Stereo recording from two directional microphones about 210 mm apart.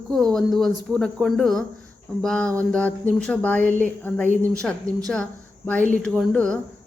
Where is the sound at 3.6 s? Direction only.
40° right (ahead or behind).